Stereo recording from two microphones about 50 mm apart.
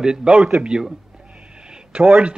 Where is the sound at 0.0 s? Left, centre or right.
Centre.